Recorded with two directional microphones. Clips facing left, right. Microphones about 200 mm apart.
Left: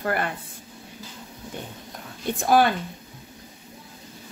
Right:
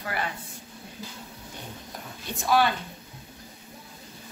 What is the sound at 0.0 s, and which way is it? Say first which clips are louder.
Speech: left 6 dB; 50° left (ahead or behind).